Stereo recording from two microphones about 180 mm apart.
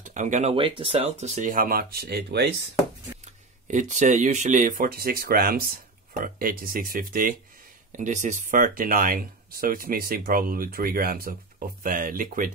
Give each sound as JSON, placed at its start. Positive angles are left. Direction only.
{"t": 0.0, "sound": "speech", "side_deg": -45}
{"t": 3.6, "sound": "speech", "side_deg": -40}